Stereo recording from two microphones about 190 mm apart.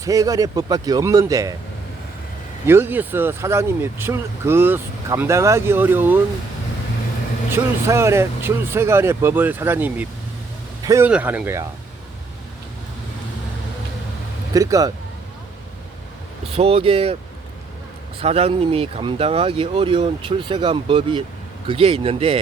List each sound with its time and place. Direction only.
0.0 s speech: 20° right (ahead or behind)
2.6 s speech: 10° right (ahead or behind)
7.5 s speech: 15° right (ahead or behind)
14.5 s speech: 20° right (ahead or behind)
16.5 s speech: 30° right (ahead or behind)
18.2 s speech: 30° right (ahead or behind)